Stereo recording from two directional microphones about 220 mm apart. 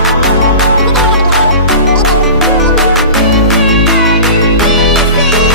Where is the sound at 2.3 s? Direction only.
Centre (ahead or behind).